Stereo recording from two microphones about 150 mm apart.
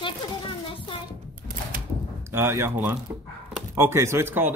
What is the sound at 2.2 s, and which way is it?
Speech, 15° right (ahead or behind).